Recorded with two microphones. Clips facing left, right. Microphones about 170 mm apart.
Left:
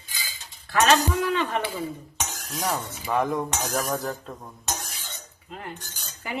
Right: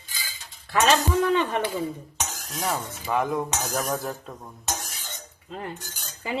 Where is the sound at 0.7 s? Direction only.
20° right (ahead or behind).